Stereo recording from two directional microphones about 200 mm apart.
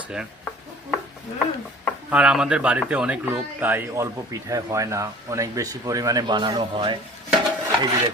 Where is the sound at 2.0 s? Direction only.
5° right (ahead or behind); by 7.0 s 25° right (ahead or behind).